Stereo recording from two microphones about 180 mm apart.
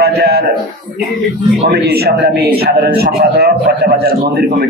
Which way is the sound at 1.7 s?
60° right (ahead or behind).